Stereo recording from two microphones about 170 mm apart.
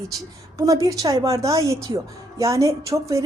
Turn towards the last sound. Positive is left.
turn(degrees=-20)  # may be behind; listen again after turning